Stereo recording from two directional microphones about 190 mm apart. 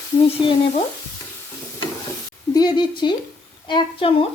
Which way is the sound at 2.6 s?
20° left (ahead or behind).